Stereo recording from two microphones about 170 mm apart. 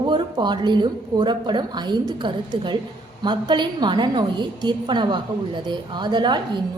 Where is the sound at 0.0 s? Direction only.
25° right (ahead or behind).